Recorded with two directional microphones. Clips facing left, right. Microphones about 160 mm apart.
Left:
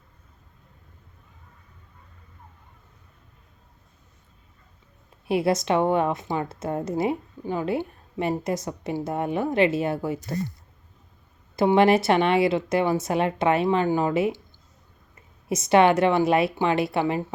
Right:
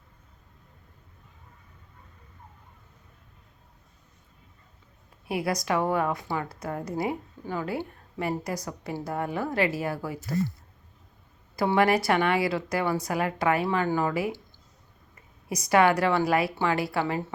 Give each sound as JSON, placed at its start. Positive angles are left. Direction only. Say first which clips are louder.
{"t": 5.3, "sound": "a woman's voice", "louder": "left 5 dB", "side_deg": 25}
{"t": 11.5, "sound": "a woman's voice", "louder": "left 5 dB", "side_deg": 20}
{"t": 15.4, "sound": "a woman's voice", "louder": "left 4 dB", "side_deg": 25}